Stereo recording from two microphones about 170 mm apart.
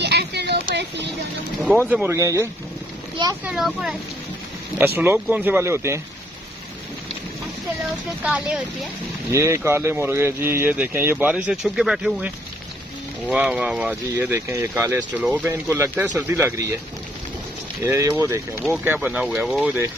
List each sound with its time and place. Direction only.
0.0 s a sound: 75° right (ahead or behind)
1.9 s speech: 10° right (ahead or behind)
3.4 s speech: 5° right (ahead or behind)
8.2 s speech: 5° right (ahead or behind)
9.3 s speech: 15° right (ahead or behind)
13.3 s speech: 5° right (ahead or behind)
17.8 s speech: 15° right (ahead or behind)